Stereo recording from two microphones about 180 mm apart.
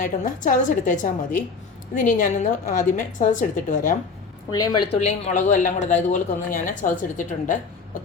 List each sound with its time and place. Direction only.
0.0 s speech: 50° left (ahead or behind)
4.5 s a woman's voice: 20° left (ahead or behind)
4.9 s speech: 35° left (ahead or behind)